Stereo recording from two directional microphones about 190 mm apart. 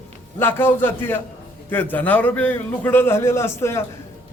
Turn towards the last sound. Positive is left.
turn(degrees=15)  # may be behind; listen again after turning